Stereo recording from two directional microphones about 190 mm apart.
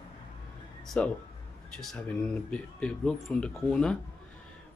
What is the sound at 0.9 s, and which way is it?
Speech, 5° left (ahead or behind).